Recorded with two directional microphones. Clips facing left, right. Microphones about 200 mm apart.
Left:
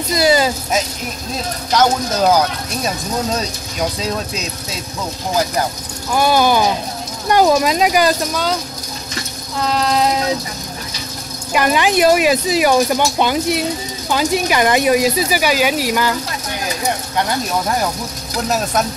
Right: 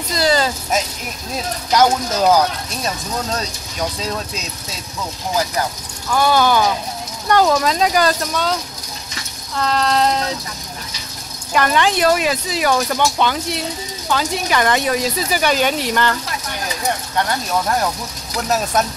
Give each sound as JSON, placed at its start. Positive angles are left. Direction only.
{"t": 0.1, "sound": "speech", "side_deg": 10}
{"t": 1.7, "sound": "speech", "side_deg": -5}
{"t": 6.1, "sound": "speech", "side_deg": 15}
{"t": 9.6, "sound": "speech", "side_deg": 5}
{"t": 11.5, "sound": "speech", "side_deg": 10}